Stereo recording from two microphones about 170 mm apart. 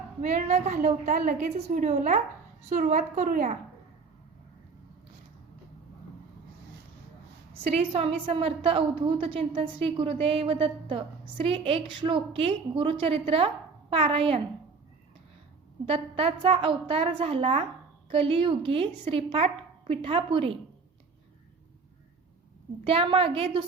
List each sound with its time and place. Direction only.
0.2 s a woman's voice: 45° right (ahead or behind)
7.7 s a woman's voice: 35° right (ahead or behind)
15.9 s a woman's voice: 35° right (ahead or behind)
22.8 s a woman's voice: 30° right (ahead or behind)